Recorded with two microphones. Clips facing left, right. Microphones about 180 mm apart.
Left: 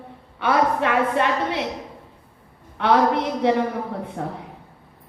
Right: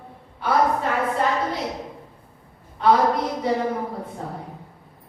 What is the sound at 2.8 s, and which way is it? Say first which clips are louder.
Speech: right 2 dB; 70° left (ahead or behind).